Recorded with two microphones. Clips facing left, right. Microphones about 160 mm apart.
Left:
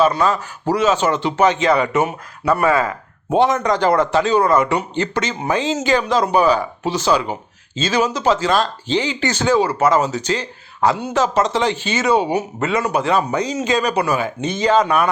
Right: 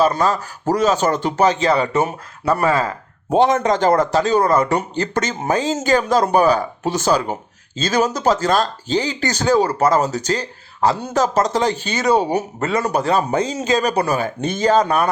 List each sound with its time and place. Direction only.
0.0 s a man's voice: 40° right (ahead or behind)
3.7 s a man's voice: 45° right (ahead or behind)